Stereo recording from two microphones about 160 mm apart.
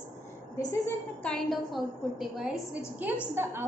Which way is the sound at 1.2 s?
Centre (ahead or behind).